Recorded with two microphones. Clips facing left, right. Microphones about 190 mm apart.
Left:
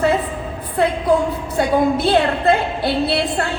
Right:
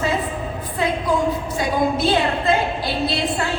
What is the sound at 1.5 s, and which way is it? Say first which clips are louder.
A woman's voice: left 7 dB; 60° left (ahead or behind).